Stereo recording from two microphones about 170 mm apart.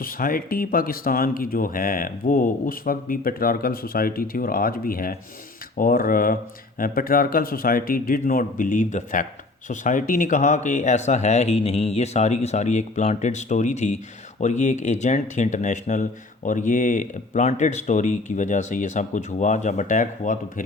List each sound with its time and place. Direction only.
0.0 s speech: 55° left (ahead or behind)